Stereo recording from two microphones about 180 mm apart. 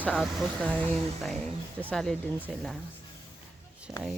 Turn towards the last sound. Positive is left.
turn(degrees=-15)  # may be behind; listen again after turning